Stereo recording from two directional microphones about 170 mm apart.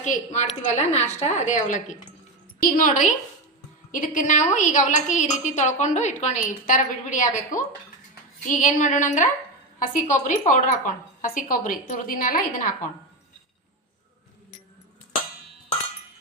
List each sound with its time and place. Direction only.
0.0 s a woman's voice: 45° left (ahead or behind)